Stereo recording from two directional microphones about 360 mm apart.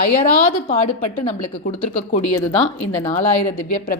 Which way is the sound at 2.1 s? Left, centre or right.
Centre.